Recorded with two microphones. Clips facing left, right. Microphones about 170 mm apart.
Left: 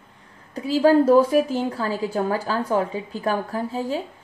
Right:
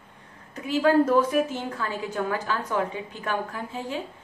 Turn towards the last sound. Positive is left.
turn(degrees=35)  # may be behind; listen again after turning